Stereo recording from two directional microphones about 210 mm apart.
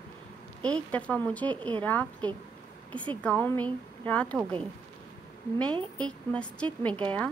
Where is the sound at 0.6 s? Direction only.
5° left (ahead or behind).